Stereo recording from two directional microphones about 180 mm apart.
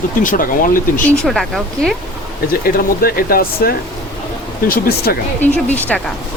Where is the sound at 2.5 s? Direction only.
55° left (ahead or behind).